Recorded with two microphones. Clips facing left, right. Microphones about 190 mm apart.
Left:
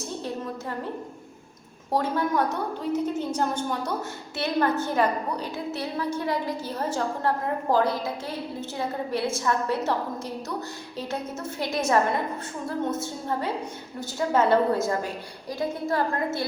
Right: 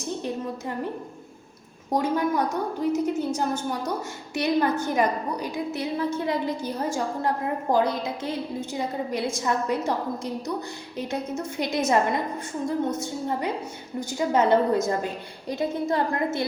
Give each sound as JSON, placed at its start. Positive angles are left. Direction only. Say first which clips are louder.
{"t": 1.9, "sound": "a woman's voice", "louder": "right 1 dB", "side_deg": -15}
{"t": 10.9, "sound": "a woman's voice", "louder": "right 3 dB", "side_deg": -15}